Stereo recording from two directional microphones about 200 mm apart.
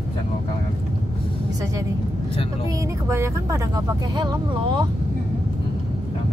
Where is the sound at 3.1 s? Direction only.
15° right (ahead or behind).